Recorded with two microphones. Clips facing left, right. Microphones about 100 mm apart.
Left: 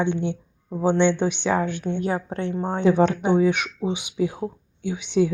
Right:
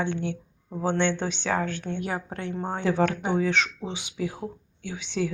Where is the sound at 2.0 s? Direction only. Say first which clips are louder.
Left 6 dB; 30° left (ahead or behind).